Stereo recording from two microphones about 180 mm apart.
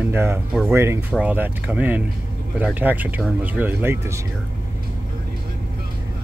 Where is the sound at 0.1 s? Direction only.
15° right (ahead or behind).